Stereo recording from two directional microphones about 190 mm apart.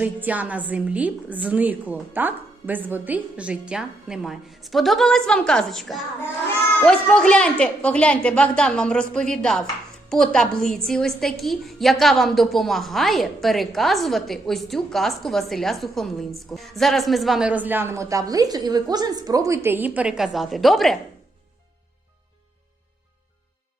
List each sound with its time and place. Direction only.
0.0 s a woman's voice: 10° right (ahead or behind)